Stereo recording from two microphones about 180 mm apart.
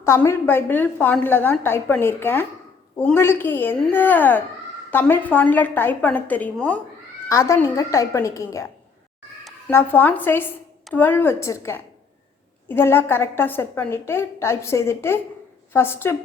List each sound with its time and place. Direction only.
0.0 s a woman's voice: 15° left (ahead or behind)